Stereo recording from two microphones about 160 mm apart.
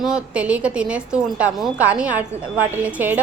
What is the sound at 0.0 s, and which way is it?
A woman's voice, 5° right (ahead or behind).